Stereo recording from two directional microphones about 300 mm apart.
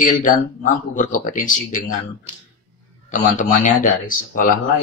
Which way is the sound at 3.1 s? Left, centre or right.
Left.